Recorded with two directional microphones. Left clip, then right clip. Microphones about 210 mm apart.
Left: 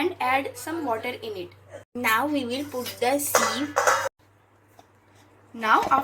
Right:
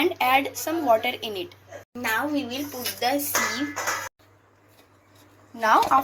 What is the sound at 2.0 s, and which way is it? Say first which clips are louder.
A woman's voice: left 2 dB; 25° left (ahead or behind).